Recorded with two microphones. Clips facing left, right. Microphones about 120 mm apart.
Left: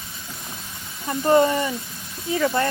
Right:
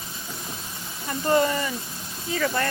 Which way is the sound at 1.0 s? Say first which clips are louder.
Left 4 dB; 25° left (ahead or behind).